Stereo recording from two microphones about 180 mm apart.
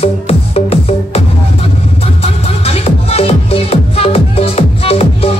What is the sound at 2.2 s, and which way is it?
Music, 35° left (ahead or behind).